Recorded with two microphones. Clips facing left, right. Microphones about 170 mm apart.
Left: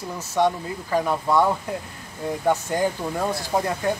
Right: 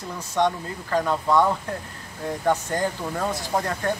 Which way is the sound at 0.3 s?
10° left (ahead or behind).